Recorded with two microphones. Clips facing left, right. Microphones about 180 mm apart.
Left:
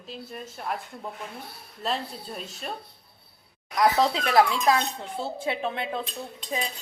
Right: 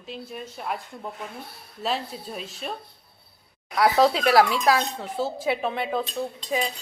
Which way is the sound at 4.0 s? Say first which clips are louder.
Right 5 dB; 25° right (ahead or behind).